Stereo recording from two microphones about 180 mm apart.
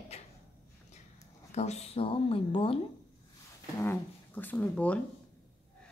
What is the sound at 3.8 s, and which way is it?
Speech, 10° left (ahead or behind).